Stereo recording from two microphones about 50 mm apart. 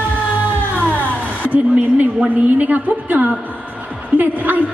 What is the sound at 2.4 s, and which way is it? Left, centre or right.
A woman's voice, right.